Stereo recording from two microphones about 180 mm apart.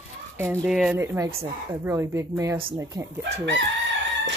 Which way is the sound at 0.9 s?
15° right (ahead or behind).